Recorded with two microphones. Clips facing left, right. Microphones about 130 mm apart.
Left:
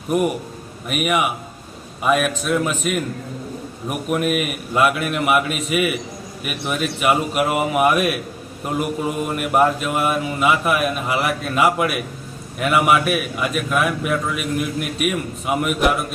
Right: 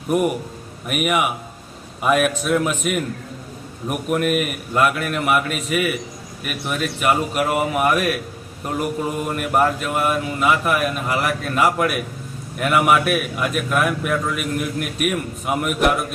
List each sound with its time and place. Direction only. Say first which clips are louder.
0.1 s a man's voice: even; centre (ahead or behind)